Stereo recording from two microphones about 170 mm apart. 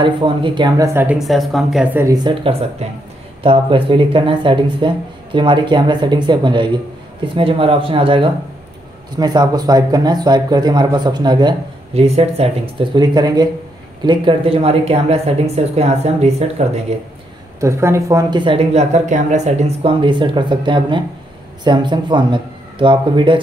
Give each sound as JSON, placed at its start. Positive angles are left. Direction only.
{"t": 0.0, "sound": "speech", "side_deg": -30}
{"t": 2.0, "sound": "speech", "side_deg": -20}
{"t": 2.8, "sound": "speech", "side_deg": -40}
{"t": 12.0, "sound": "speech", "side_deg": -35}
{"t": 17.6, "sound": "speech", "side_deg": -15}